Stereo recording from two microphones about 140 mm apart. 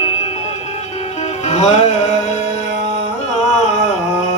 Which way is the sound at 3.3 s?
55° left (ahead or behind).